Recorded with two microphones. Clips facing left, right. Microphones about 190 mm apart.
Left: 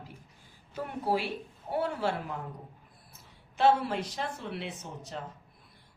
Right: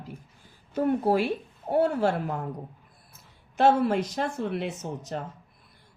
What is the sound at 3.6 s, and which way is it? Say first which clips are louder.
A woman's voice: right 4 dB; 45° right (ahead or behind).